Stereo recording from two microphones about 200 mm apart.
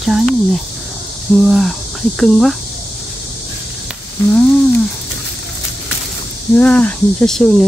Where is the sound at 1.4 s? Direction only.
Centre (ahead or behind).